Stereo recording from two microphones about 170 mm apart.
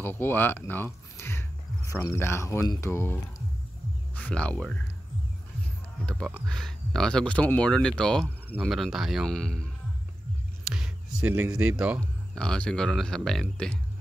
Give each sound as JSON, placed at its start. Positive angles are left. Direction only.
{"t": 0.0, "sound": "speech", "side_deg": 10}
{"t": 1.1, "sound": "a sound", "side_deg": 15}
{"t": 1.9, "sound": "speech", "side_deg": 15}
{"t": 6.0, "sound": "speech", "side_deg": 5}
{"t": 10.6, "sound": "music", "side_deg": -5}
{"t": 11.2, "sound": "speech", "side_deg": -10}
{"t": 12.4, "sound": "speech", "side_deg": 5}